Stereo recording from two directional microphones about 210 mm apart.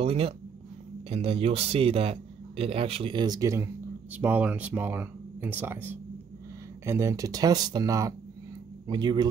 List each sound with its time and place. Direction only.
0.0 s speech: 30° right (ahead or behind)